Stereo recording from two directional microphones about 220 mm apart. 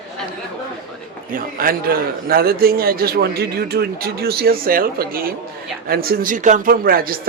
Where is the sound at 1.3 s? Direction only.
40° right (ahead or behind).